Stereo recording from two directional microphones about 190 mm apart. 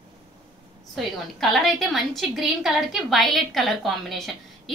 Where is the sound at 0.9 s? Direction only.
Centre (ahead or behind).